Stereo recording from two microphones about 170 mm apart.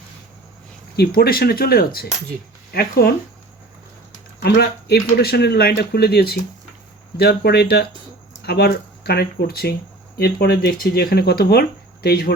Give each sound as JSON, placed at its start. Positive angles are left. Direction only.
{"t": 0.9, "sound": "speech", "side_deg": 65}
{"t": 4.4, "sound": "speech", "side_deg": 70}